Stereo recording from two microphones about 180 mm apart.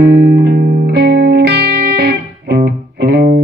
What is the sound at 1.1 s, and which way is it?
Music, 65° right (ahead or behind).